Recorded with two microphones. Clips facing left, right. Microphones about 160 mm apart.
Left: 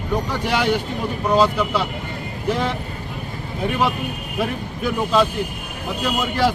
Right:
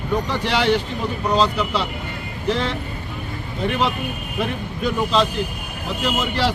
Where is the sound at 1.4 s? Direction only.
10° left (ahead or behind).